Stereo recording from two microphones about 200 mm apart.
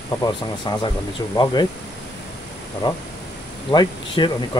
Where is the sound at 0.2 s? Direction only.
20° left (ahead or behind).